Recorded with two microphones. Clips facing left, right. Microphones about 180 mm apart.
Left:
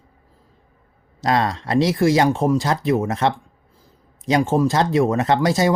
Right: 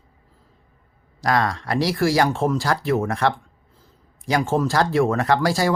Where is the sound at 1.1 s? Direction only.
25° left (ahead or behind).